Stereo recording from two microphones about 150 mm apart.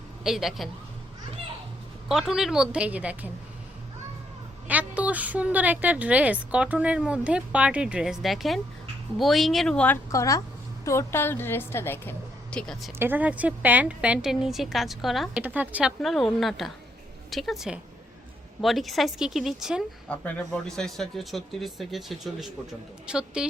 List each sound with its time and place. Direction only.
0.3 s speech: centre (ahead or behind)
2.0 s a woman's voice: centre (ahead or behind)
4.7 s a woman's voice: 10° right (ahead or behind); by 10.0 s 10° left (ahead or behind)
10.1 s a woman's voice: 20° left (ahead or behind); by 12.9 s 5° left (ahead or behind)
13.0 s a woman's voice: 10° right (ahead or behind)
16.0 s speech: centre (ahead or behind)
20.1 s speech: 10° left (ahead or behind)